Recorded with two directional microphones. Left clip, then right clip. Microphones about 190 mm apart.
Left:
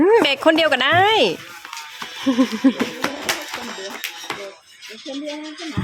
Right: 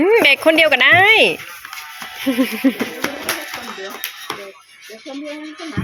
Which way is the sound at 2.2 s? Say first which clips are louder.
Right 1 dB; 20° left (ahead or behind).